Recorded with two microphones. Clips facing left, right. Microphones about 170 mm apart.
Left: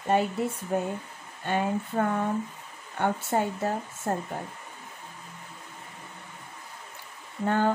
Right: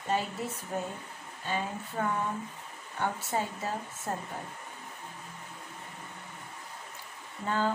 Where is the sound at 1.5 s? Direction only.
60° left (ahead or behind).